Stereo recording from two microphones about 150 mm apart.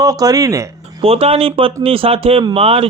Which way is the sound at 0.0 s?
25° right (ahead or behind).